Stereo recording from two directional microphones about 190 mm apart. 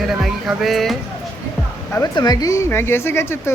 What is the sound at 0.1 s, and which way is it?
Music, centre (ahead or behind).